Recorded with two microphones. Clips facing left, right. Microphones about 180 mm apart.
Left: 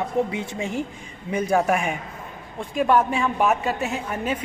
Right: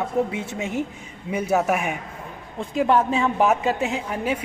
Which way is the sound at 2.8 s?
25° right (ahead or behind).